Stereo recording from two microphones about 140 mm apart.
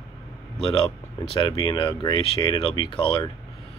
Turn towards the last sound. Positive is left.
turn(degrees=35)  # may be behind; listen again after turning